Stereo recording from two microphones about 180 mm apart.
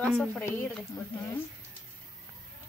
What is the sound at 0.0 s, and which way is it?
Speech, centre (ahead or behind).